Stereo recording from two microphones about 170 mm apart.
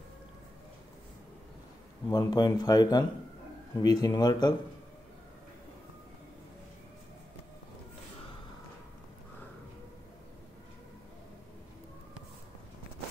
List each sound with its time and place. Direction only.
2.0 s speech: 25° left (ahead or behind)